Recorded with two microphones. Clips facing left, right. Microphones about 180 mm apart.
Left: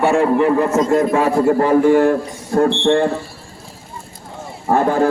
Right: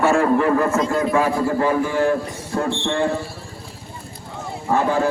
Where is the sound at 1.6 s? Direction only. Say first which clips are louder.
Left 8 dB; 50° left (ahead or behind).